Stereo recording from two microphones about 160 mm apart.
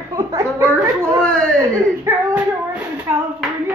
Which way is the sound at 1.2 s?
5° left (ahead or behind).